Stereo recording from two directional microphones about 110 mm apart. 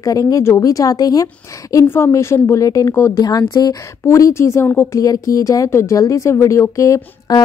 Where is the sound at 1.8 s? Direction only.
20° left (ahead or behind).